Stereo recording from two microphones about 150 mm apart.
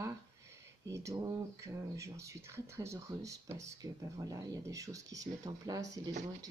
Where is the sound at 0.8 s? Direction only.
20° right (ahead or behind).